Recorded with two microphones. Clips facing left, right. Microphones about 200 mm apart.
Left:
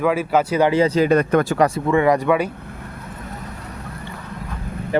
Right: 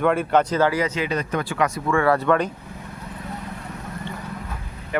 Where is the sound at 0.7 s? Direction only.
30° left (ahead or behind).